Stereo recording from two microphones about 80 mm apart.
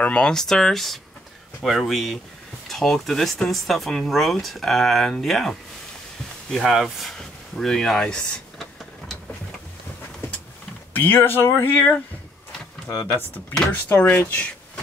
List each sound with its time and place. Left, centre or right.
0.0 s speech: centre
6.5 s a sound: centre
10.9 s speech: left